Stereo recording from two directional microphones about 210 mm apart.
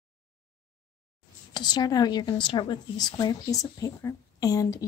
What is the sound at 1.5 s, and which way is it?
A woman's voice, 20° left (ahead or behind).